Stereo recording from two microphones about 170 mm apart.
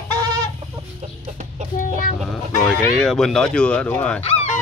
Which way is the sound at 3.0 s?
Centre (ahead or behind).